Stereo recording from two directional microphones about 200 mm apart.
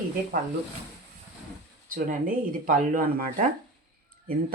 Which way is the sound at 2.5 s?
45° right (ahead or behind).